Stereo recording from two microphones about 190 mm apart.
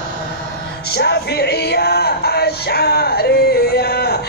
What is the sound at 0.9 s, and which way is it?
Music, 60° left (ahead or behind).